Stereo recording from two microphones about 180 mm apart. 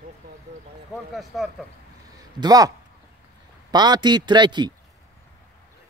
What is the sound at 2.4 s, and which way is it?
A man's voice, 20° right (ahead or behind).